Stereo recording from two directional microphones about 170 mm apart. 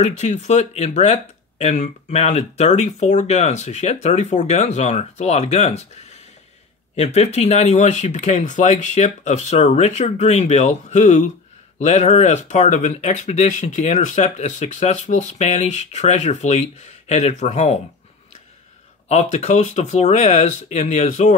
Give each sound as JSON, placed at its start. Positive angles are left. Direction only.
{"t": 0.0, "sound": "speech", "side_deg": 40}
{"t": 19.0, "sound": "speech", "side_deg": 40}